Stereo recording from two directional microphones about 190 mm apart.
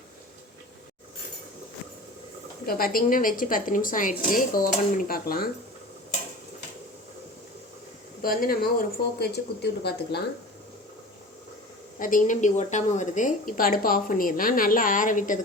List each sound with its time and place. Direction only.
2.6 s a woman's voice: 50° left (ahead or behind)
8.2 s a woman's voice: 50° left (ahead or behind)
11.9 s a woman's voice: 45° left (ahead or behind)